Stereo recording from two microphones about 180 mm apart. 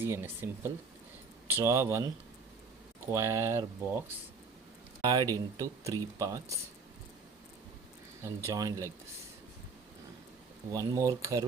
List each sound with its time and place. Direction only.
0.0 s speech: 10° right (ahead or behind)
5.0 s speech: 20° right (ahead or behind)
8.2 s speech: 15° right (ahead or behind)
10.7 s speech: 20° right (ahead or behind)